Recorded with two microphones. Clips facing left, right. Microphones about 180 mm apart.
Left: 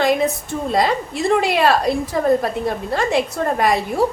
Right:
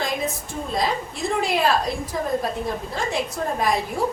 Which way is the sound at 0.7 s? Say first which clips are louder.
Left 6 dB; 70° left (ahead or behind).